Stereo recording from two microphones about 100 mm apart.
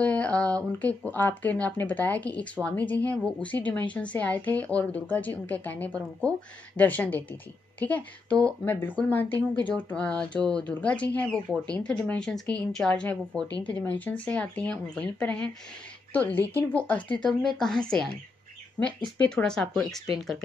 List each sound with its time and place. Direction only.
0.0 s speech: 15° left (ahead or behind)
17.6 s speech: 5° left (ahead or behind)